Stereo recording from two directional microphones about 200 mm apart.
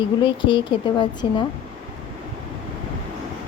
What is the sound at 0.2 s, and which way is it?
Speech, 25° left (ahead or behind).